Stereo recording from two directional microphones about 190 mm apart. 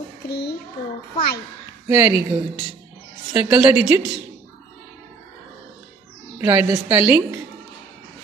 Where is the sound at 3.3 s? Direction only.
5° right (ahead or behind).